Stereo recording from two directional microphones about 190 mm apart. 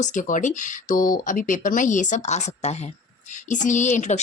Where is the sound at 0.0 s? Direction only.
40° left (ahead or behind).